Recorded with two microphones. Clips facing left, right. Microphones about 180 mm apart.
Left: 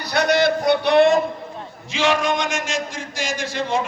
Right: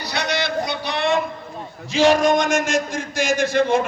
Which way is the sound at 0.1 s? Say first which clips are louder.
Left 7 dB; 55° left (ahead or behind).